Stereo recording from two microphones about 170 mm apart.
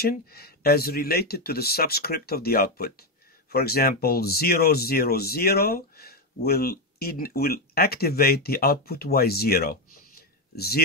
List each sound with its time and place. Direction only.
0.0 s speech: 65° left (ahead or behind)